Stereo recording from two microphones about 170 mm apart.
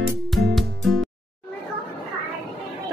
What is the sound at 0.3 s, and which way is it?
Music, centre (ahead or behind).